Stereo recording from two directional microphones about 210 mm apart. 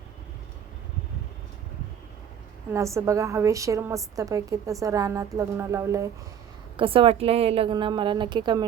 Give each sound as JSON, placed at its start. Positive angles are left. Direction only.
{"t": 2.7, "sound": "a woman's voice", "side_deg": -15}
{"t": 6.7, "sound": "a woman's voice", "side_deg": -25}